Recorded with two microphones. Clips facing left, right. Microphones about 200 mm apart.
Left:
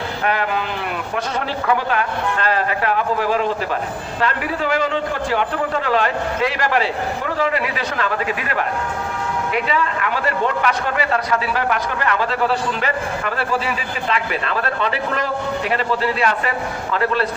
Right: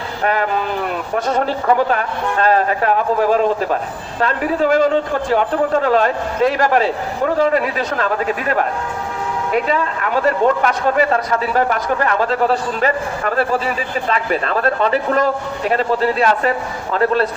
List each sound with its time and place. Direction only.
0.3 s a man's voice: 40° right (ahead or behind)
9.5 s a man's voice: 40° right (ahead or behind)